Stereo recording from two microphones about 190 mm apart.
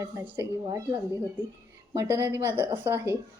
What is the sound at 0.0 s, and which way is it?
A woman's voice, 10° right (ahead or behind).